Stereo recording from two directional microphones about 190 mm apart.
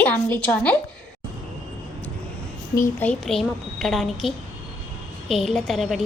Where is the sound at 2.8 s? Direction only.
5° left (ahead or behind).